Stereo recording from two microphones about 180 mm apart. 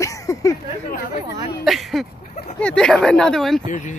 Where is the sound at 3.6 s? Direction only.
45° left (ahead or behind).